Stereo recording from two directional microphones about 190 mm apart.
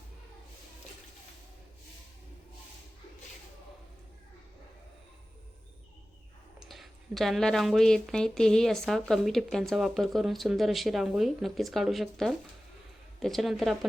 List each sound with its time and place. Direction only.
6.7 s speech: centre (ahead or behind)